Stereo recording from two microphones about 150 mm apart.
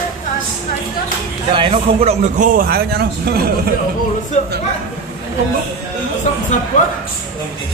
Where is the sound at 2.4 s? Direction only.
80° right.